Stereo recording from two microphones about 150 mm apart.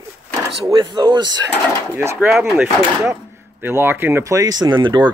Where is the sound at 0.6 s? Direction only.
30° right (ahead or behind).